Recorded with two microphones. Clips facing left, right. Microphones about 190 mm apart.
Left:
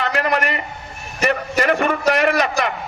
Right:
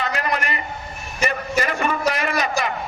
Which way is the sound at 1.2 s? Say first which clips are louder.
Left 4 dB; 65° left (ahead or behind).